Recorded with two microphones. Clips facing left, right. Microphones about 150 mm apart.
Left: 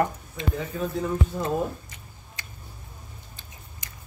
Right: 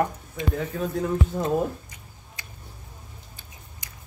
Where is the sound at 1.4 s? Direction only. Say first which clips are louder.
Right 2 dB; 15° right (ahead or behind).